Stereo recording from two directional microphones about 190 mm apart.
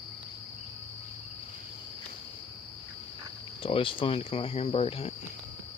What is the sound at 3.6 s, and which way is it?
Speech, 30° left (ahead or behind).